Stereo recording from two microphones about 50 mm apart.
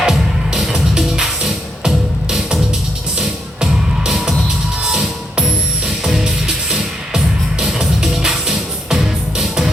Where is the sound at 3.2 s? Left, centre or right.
Centre.